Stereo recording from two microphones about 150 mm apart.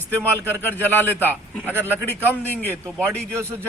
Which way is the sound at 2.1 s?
10° left (ahead or behind).